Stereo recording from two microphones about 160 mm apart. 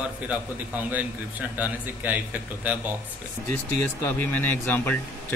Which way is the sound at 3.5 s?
15° left (ahead or behind).